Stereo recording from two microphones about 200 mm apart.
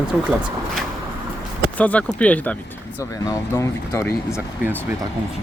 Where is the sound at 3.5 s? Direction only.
15° left (ahead or behind).